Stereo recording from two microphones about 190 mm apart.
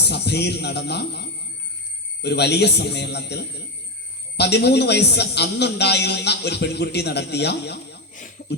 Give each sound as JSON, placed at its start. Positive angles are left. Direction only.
{"t": 0.1, "sound": "speech", "side_deg": 60}
{"t": 2.2, "sound": "a man's voice", "side_deg": 60}